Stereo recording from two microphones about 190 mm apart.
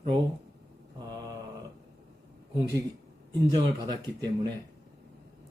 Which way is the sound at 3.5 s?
25° right (ahead or behind).